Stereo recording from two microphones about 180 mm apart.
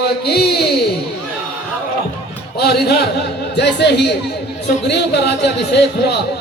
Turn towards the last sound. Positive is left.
turn(degrees=65)  # may be behind; listen again after turning